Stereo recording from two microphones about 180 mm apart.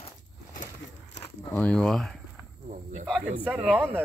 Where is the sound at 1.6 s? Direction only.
5° left (ahead or behind).